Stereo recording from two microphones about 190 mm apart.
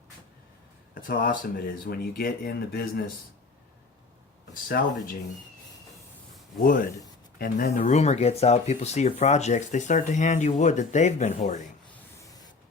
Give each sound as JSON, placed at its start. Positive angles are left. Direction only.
{"t": 0.9, "sound": "speech", "side_deg": 50}
{"t": 4.7, "sound": "speech", "side_deg": 50}
{"t": 6.6, "sound": "speech", "side_deg": 45}